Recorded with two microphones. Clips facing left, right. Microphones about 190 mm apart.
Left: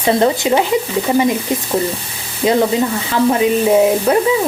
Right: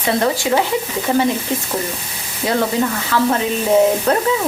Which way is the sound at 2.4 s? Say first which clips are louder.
Left 5 dB; 20° left (ahead or behind).